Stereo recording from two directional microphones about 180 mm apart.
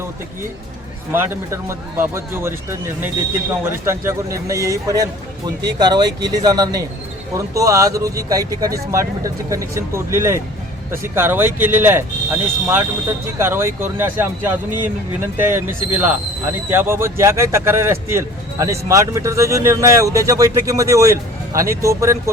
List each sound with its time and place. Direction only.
1.1 s speech: 15° right (ahead or behind)